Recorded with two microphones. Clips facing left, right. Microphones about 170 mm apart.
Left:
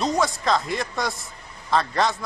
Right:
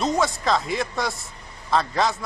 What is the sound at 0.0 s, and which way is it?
A man's voice, centre (ahead or behind).